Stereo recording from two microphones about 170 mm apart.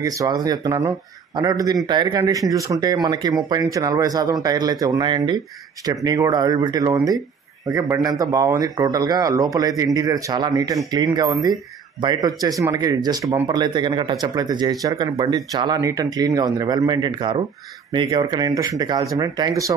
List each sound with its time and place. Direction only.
0.0 s speech: 20° right (ahead or behind)